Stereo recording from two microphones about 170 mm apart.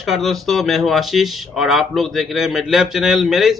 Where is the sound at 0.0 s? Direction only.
Centre (ahead or behind).